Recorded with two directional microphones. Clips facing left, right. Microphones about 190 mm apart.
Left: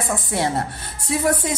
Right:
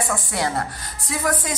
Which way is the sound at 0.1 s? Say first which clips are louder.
Left 2 dB; 25° left (ahead or behind).